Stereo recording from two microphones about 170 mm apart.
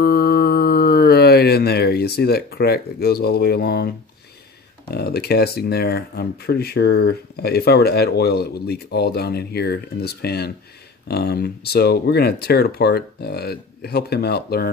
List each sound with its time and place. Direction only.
0.0 s mantra: 65° left (ahead or behind)
4.8 s speech: 70° left (ahead or behind)